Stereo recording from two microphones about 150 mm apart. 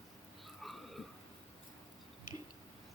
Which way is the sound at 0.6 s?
Centre (ahead or behind).